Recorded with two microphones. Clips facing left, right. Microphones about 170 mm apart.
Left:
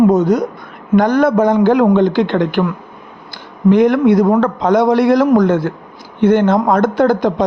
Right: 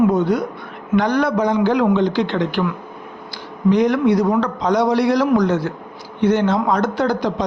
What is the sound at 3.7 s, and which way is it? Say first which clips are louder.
A man's voice: left 5 dB; 55° left (ahead or behind).